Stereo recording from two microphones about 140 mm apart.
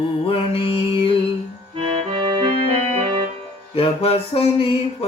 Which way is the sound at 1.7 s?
45° right (ahead or behind).